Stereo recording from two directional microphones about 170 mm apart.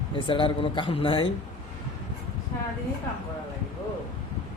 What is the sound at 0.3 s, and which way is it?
Speech, 30° left (ahead or behind).